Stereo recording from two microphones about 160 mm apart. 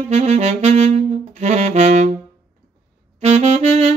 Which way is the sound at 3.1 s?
40° right (ahead or behind).